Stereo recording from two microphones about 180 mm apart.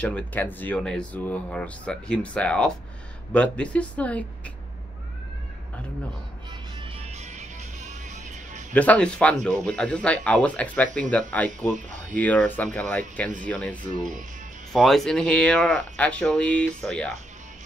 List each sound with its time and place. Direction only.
0.0 s speech: 10° left (ahead or behind)
6.8 s music: 35° right (ahead or behind)
8.7 s speech: 5° left (ahead or behind)
11.7 s speech: 45° right (ahead or behind)
12.2 s speech: 10° left (ahead or behind)